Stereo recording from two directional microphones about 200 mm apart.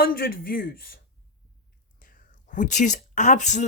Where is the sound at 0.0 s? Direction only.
45° left (ahead or behind).